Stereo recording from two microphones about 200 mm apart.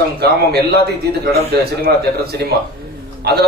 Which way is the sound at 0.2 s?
55° right (ahead or behind).